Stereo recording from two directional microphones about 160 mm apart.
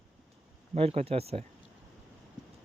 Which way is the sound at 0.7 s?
40° right (ahead or behind).